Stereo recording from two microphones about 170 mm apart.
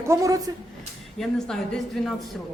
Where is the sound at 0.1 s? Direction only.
20° right (ahead or behind).